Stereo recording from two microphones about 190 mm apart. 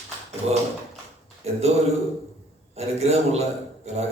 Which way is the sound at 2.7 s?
35° right (ahead or behind).